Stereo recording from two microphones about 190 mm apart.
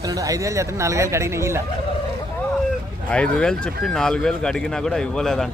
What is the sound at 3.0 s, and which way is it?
Speech, 5° left (ahead or behind).